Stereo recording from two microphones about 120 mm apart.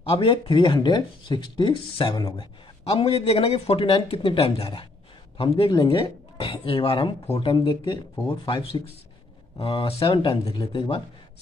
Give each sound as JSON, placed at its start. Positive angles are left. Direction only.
{"t": 0.1, "sound": "speech", "side_deg": 45}
{"t": 2.9, "sound": "speech", "side_deg": 55}
{"t": 5.7, "sound": "speech", "side_deg": 35}
{"t": 6.0, "sound": "speech", "side_deg": 45}
{"t": 9.6, "sound": "speech", "side_deg": 50}